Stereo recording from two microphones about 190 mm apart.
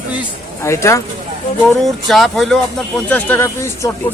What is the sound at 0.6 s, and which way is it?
Speech, 15° left (ahead or behind).